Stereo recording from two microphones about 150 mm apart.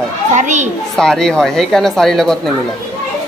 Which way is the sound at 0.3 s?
55° right (ahead or behind).